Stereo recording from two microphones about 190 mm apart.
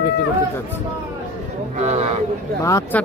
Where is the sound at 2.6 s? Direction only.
15° left (ahead or behind).